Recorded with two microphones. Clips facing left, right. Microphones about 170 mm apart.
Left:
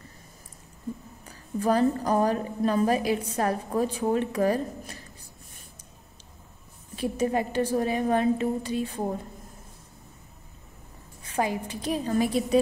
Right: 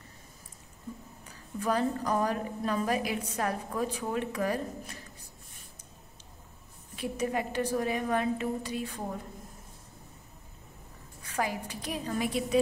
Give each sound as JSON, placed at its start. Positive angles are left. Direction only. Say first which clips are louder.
{"t": 1.6, "sound": "a woman's voice", "louder": "left 6 dB", "side_deg": 35}
{"t": 7.0, "sound": "a woman's voice", "louder": "left 5 dB", "side_deg": 30}
{"t": 11.2, "sound": "a woman's voice", "louder": "left 5 dB", "side_deg": 25}